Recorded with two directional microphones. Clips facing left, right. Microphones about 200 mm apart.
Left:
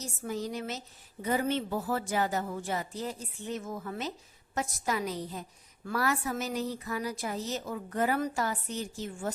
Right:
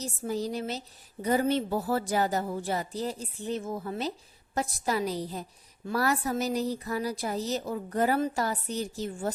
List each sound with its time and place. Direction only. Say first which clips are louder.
0.3 s a woman's voice: right 3 dB; 35° right (ahead or behind)